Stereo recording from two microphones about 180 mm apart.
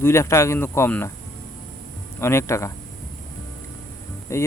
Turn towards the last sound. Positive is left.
turn(degrees=15)  # may be behind; listen again after turning